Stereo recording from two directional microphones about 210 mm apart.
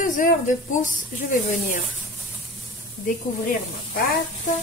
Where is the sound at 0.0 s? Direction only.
40° left (ahead or behind).